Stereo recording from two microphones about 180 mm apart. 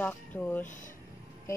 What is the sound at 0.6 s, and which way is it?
Speech, 45° left (ahead or behind).